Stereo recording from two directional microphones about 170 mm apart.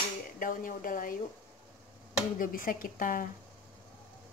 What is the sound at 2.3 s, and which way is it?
Speech, 55° left (ahead or behind).